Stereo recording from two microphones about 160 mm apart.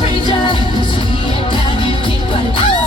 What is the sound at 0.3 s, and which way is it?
Music, 30° left (ahead or behind).